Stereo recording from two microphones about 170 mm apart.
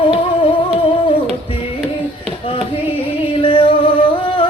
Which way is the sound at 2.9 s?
30° left (ahead or behind).